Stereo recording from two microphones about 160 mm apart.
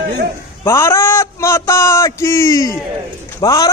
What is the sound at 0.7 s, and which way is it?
A man's voice, 15° left (ahead or behind).